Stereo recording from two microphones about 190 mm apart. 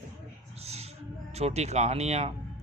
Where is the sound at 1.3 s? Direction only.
35° right (ahead or behind).